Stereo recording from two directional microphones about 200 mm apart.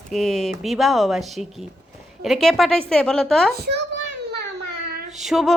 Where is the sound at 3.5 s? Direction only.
50° right (ahead or behind).